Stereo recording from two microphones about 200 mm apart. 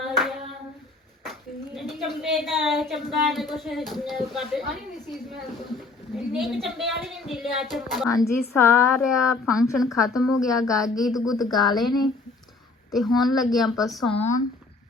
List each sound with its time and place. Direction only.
0.0 s hands: centre (ahead or behind)
1.2 s a woman's voice: centre (ahead or behind)
8.1 s a woman's voice: 15° left (ahead or behind)
9.1 s a woman's voice: 5° right (ahead or behind)
12.9 s a woman's voice: centre (ahead or behind)
14.1 s speech: 35° left (ahead or behind)